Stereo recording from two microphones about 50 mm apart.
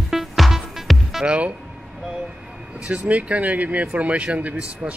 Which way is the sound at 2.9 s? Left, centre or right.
Right.